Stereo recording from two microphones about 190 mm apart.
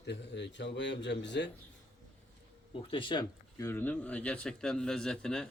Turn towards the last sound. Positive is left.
turn(degrees=5)  # may be behind; listen again after turning